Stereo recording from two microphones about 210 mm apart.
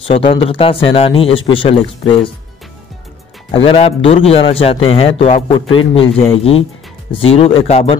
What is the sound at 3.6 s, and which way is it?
Speech, 30° left (ahead or behind).